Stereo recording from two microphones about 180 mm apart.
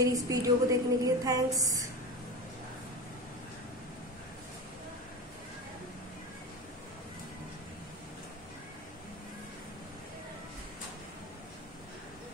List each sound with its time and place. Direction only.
0.0 s a woman's voice: 20° right (ahead or behind)